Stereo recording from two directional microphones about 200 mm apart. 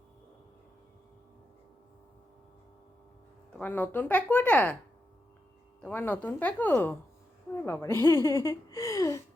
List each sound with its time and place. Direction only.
3.6 s speech: 10° left (ahead or behind)
5.8 s speech: 10° left (ahead or behind)
8.3 s a sound: 15° left (ahead or behind)